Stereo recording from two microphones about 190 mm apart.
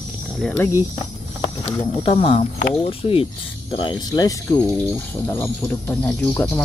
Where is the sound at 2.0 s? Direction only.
30° left (ahead or behind).